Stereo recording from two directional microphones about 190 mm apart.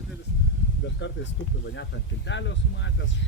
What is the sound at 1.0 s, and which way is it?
Speech, 70° left (ahead or behind).